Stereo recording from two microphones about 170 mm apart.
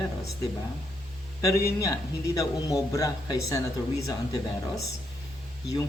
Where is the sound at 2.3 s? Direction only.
20° left (ahead or behind).